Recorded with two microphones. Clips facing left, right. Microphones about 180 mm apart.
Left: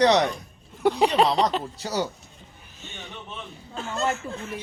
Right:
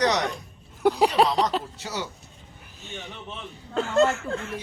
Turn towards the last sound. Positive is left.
turn(degrees=-90)